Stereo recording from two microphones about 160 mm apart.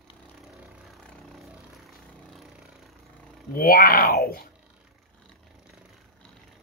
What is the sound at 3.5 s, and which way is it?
Speech, 70° left (ahead or behind).